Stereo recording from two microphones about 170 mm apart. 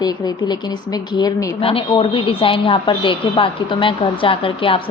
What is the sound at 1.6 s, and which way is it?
A woman's voice, 30° left (ahead or behind).